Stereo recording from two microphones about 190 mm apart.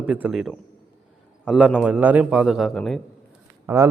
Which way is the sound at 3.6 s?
15° right (ahead or behind).